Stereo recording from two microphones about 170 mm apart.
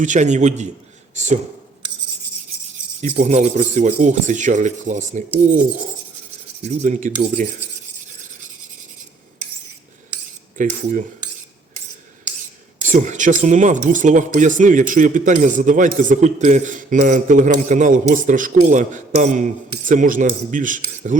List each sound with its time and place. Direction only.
0.0 s speech: 45° right (ahead or behind)
3.0 s speech: 45° right (ahead or behind)
6.6 s speech: 45° right (ahead or behind)
10.6 s speech: 50° right (ahead or behind)
12.8 s speech: 45° right (ahead or behind)